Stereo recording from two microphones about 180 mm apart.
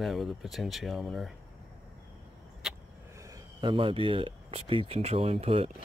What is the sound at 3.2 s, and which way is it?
Speech, 20° right (ahead or behind).